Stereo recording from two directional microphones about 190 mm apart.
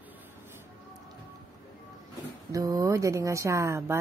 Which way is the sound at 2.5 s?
15° right (ahead or behind).